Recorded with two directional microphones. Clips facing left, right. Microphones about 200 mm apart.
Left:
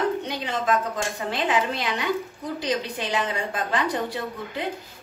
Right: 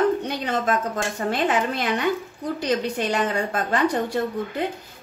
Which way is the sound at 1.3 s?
50° right (ahead or behind).